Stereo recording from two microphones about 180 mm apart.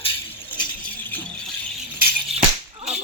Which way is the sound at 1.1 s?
10° left (ahead or behind).